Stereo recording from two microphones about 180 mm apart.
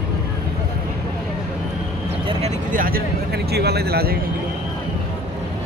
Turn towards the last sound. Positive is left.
turn(degrees=-60)  # may be behind; listen again after turning